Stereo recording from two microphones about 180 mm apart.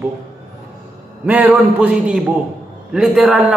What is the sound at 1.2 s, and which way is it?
A man's voice, 10° right (ahead or behind).